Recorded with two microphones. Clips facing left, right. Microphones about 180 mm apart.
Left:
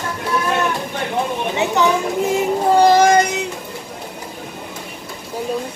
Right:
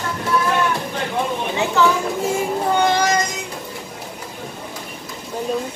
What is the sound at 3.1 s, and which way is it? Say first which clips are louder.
Child singing: left 6 dB; 65° left (ahead or behind).